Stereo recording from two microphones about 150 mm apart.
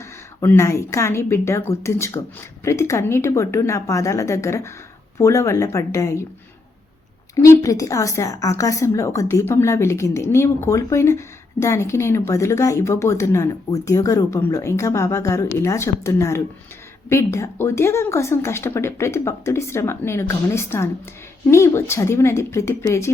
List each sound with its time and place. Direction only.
0.3 s a woman's voice: 20° left (ahead or behind)
7.6 s a woman's voice: 20° left (ahead or behind)